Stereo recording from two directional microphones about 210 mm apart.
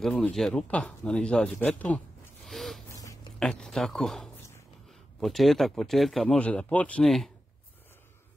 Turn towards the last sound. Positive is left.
turn(degrees=0)  # may be behind; listen again after turning